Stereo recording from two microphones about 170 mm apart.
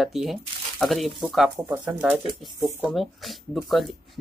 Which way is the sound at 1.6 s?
20° right (ahead or behind).